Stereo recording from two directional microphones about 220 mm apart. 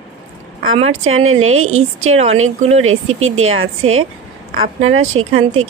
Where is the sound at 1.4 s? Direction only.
70° right (ahead or behind).